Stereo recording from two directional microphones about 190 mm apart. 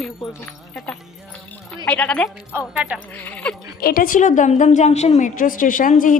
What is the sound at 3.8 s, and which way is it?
A woman's voice, 50° left (ahead or behind).